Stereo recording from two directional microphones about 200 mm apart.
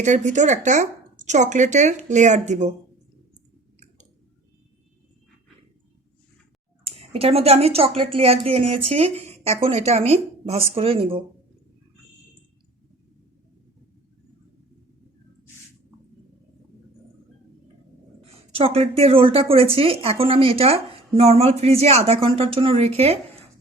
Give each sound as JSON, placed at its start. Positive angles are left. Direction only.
{"t": 0.0, "sound": "speech", "side_deg": -35}
{"t": 6.8, "sound": "a woman's voice", "side_deg": -30}
{"t": 18.5, "sound": "a woman's voice", "side_deg": -30}